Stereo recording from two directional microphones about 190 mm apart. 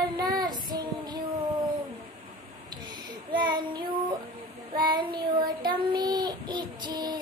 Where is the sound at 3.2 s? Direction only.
25° right (ahead or behind).